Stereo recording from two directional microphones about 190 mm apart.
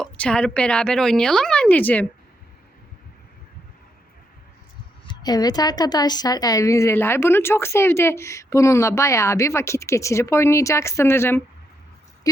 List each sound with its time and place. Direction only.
0.0 s speech: 5° left (ahead or behind)
5.0 s a woman's voice: 20° left (ahead or behind)